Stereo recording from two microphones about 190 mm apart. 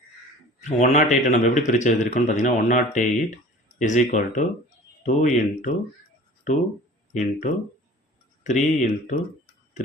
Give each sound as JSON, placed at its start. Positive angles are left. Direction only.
{"t": 0.6, "sound": "a man's voice", "side_deg": 40}
{"t": 7.1, "sound": "a man's voice", "side_deg": 40}